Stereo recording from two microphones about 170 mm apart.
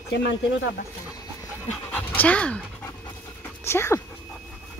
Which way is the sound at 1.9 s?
10° left (ahead or behind).